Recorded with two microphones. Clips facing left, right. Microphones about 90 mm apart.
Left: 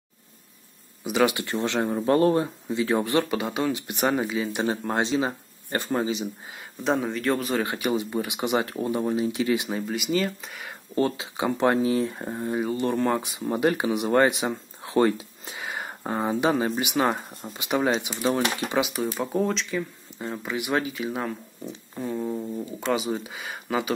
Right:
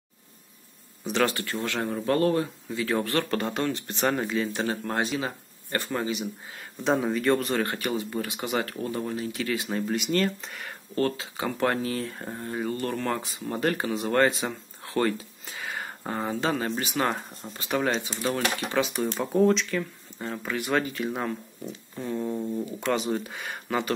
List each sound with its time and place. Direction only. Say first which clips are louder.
1.0 s speech: left 3 dB; 10° left (ahead or behind)
4.6 s speech: left 3 dB; 20° left (ahead or behind)
6.8 s speech: even; centre (ahead or behind)
7.9 s speech: left 3 dB; 20° left (ahead or behind)
9.7 s speech: even; 5° left (ahead or behind)
11.0 s speech: left 2 dB; 15° left (ahead or behind)
18.9 s speech: right 2 dB; centre (ahead or behind)
20.8 s speech: even; 5° left (ahead or behind)